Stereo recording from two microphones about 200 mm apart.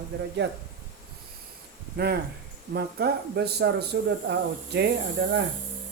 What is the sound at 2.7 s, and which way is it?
Speech, 55° right (ahead or behind).